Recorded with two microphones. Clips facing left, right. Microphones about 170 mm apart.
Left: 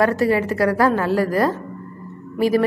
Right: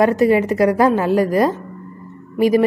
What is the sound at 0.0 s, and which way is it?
A woman's voice, 20° right (ahead or behind).